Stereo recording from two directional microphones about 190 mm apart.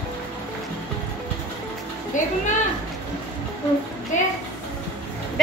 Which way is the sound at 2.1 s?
40° left (ahead or behind).